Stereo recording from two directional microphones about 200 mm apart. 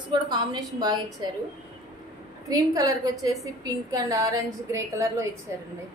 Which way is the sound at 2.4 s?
15° right (ahead or behind).